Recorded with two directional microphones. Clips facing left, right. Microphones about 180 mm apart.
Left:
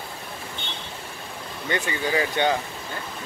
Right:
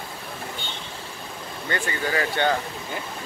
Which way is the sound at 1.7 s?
20° left (ahead or behind).